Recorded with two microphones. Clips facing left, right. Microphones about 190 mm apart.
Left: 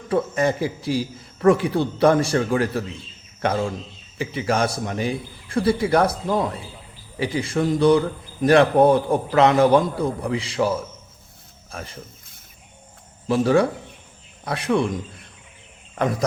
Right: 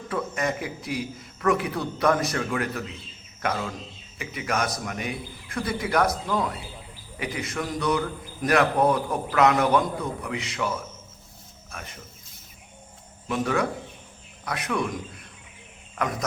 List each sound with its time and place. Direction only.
0.1 s a man's voice: 30° left (ahead or behind)
11.7 s a man's voice: 30° left (ahead or behind)
13.2 s a man's voice: 30° left (ahead or behind)